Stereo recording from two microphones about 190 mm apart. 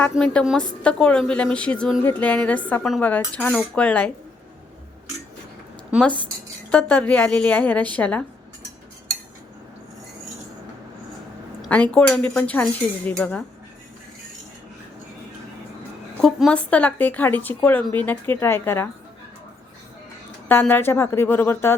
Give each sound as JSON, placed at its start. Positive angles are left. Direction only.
{"t": 0.0, "sound": "a woman's voice", "side_deg": 5}
{"t": 5.9, "sound": "a woman's voice", "side_deg": -5}
{"t": 6.7, "sound": "speech", "side_deg": 10}
{"t": 11.6, "sound": "speech", "side_deg": 5}
{"t": 16.2, "sound": "speech", "side_deg": 5}
{"t": 20.5, "sound": "speech", "side_deg": 10}